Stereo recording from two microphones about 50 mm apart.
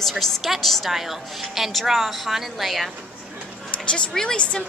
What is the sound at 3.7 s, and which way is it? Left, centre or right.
Speech, left.